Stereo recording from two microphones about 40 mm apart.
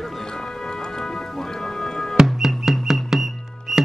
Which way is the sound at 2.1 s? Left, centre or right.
Centre.